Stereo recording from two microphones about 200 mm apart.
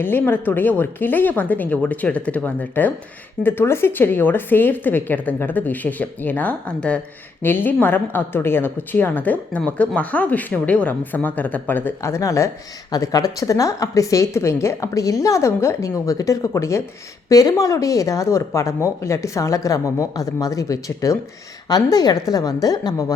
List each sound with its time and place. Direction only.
0.0 s a woman's voice: 10° left (ahead or behind)